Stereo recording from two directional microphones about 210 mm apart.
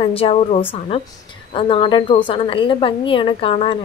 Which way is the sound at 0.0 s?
25° left (ahead or behind).